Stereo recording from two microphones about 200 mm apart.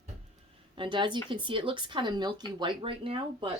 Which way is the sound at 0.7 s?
25° right (ahead or behind).